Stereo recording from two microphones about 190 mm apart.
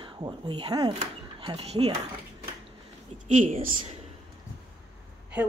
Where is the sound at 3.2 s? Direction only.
35° right (ahead or behind).